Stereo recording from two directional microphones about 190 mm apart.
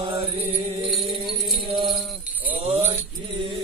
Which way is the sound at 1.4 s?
Centre (ahead or behind).